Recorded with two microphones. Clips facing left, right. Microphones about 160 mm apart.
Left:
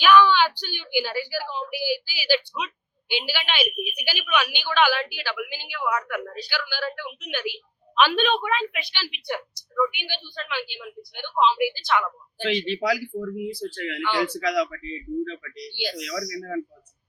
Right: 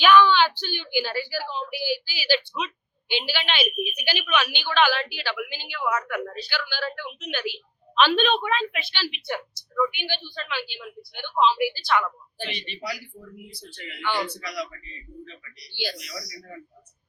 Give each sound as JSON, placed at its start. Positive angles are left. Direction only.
{"t": 0.0, "sound": "a woman's voice", "side_deg": 10}
{"t": 6.0, "sound": "a woman's voice", "side_deg": 0}
{"t": 6.3, "sound": "a woman's voice", "side_deg": 10}
{"t": 12.4, "sound": "speech", "side_deg": 90}
{"t": 15.7, "sound": "speech", "side_deg": 20}
{"t": 16.0, "sound": "speech", "side_deg": 90}